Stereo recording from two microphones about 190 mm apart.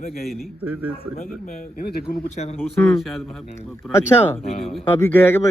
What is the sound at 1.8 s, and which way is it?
Speech, 55° left (ahead or behind).